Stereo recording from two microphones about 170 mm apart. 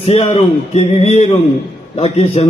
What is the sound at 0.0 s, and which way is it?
A man's voice, 35° left (ahead or behind).